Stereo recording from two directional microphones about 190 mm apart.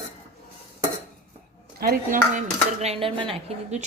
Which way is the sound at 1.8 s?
50° right (ahead or behind).